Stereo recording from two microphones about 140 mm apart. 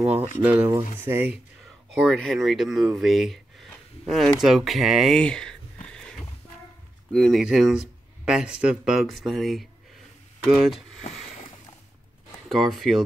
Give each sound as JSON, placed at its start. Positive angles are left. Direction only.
{"t": 0.4, "sound": "speech", "side_deg": -10}
{"t": 2.0, "sound": "speech", "side_deg": 0}
{"t": 5.9, "sound": "a sound", "side_deg": 5}
{"t": 7.1, "sound": "speech", "side_deg": 5}
{"t": 11.0, "sound": "rowboat", "side_deg": 55}
{"t": 12.4, "sound": "speech", "side_deg": 0}